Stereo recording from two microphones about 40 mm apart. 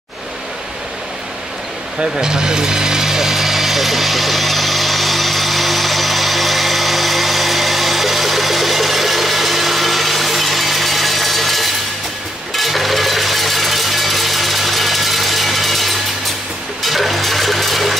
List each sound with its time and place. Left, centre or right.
2.0 s power tool: right; by 11.7 s centre
12.5 s a sound: centre
16.8 s water: centre